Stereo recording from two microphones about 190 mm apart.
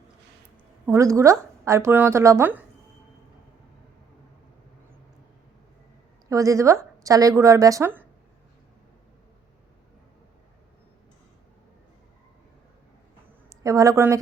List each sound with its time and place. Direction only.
0.9 s a woman's voice: 15° right (ahead or behind)
6.2 s a woman's voice: 15° right (ahead or behind)
13.5 s a woman's voice: 20° right (ahead or behind)